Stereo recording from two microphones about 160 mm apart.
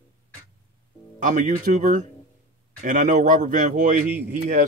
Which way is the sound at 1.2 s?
50° right (ahead or behind).